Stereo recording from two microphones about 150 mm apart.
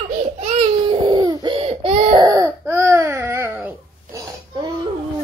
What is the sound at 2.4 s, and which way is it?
Baby cry, 15° right (ahead or behind).